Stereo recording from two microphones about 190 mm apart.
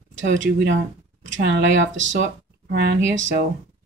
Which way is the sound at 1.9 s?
80° right.